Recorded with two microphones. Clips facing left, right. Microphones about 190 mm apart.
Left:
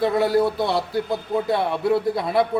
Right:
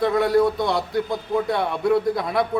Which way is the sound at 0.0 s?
5° left (ahead or behind).